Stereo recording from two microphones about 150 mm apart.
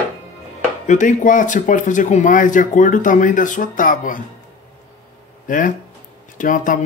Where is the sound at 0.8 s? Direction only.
60° left (ahead or behind).